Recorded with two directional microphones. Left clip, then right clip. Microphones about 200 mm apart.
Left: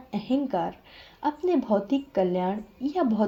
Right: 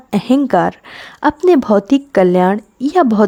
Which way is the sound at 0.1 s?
50° right (ahead or behind).